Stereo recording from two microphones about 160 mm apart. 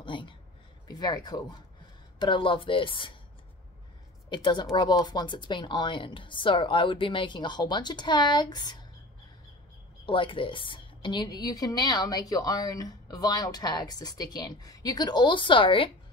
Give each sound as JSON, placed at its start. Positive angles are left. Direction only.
{"t": 0.0, "sound": "a sound", "side_deg": 30}
{"t": 0.8, "sound": "a woman's voice", "side_deg": 25}
{"t": 4.3, "sound": "a woman's voice", "side_deg": 30}
{"t": 10.0, "sound": "a woman's voice", "side_deg": 30}